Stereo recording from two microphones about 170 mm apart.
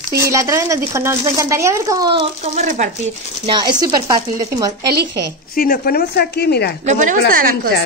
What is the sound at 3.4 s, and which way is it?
Speech, 25° right (ahead or behind).